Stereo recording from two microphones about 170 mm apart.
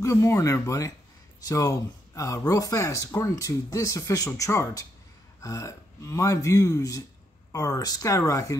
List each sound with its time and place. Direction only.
0.0 s speech: 15° left (ahead or behind)